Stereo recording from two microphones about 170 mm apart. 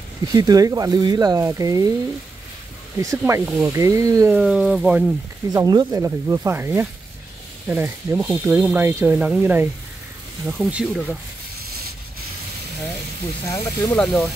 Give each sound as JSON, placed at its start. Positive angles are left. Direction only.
{"t": 0.3, "sound": "speech", "side_deg": -20}
{"t": 3.0, "sound": "speech", "side_deg": -15}
{"t": 4.4, "sound": "speech", "side_deg": -5}
{"t": 5.5, "sound": "speech", "side_deg": -20}
{"t": 13.5, "sound": "speech", "side_deg": 10}